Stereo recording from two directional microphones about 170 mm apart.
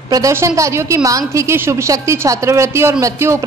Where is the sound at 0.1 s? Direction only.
15° right (ahead or behind).